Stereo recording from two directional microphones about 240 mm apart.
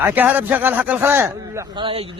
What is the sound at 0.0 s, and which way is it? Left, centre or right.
Speech, centre.